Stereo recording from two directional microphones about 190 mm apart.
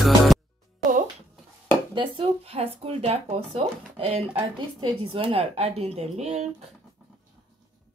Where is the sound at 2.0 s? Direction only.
30° right (ahead or behind).